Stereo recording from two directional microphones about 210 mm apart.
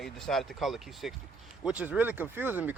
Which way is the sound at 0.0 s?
Centre (ahead or behind).